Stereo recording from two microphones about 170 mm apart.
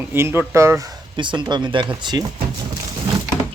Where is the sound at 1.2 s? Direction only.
30° right (ahead or behind).